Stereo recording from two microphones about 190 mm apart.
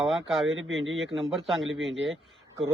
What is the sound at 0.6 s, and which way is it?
Speech, 90° right.